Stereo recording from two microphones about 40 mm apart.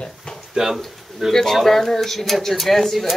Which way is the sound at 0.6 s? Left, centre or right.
Centre.